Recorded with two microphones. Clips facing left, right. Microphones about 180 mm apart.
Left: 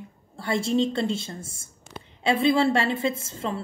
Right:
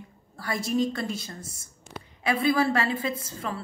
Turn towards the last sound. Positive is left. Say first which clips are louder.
# left 3 dB
turn(degrees=25)  # may be behind; listen again after turning